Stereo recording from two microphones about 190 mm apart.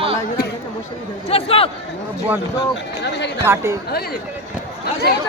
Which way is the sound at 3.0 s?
65° left (ahead or behind).